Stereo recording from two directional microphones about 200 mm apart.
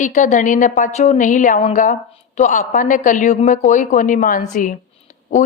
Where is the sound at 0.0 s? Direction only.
40° left (ahead or behind).